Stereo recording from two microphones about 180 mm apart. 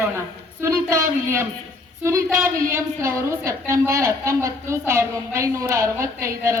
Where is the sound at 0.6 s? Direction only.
15° right (ahead or behind).